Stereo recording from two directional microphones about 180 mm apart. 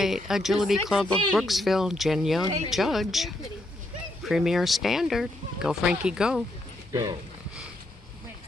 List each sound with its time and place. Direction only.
0.0 s speech: centre (ahead or behind)
6.9 s speech: 20° right (ahead or behind)